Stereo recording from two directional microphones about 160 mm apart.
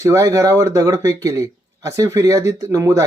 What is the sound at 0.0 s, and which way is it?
Speech, 20° right (ahead or behind).